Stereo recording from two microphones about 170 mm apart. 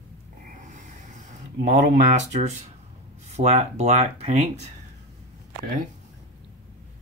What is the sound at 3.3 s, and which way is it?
Speech, 40° right (ahead or behind).